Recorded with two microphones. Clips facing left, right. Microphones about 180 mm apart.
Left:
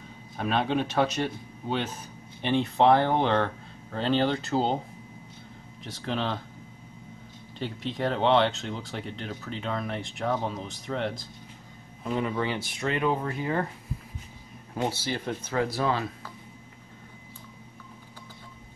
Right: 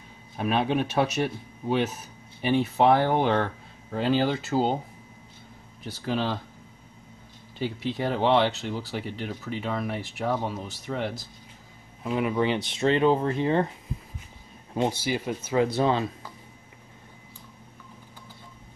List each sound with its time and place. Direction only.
0.4 s speech: 10° right (ahead or behind)
5.9 s speech: 5° right (ahead or behind)
7.5 s speech: 5° right (ahead or behind); by 13.7 s 25° right (ahead or behind)
14.8 s speech: 10° right (ahead or behind)
15.6 s speech: 20° right (ahead or behind)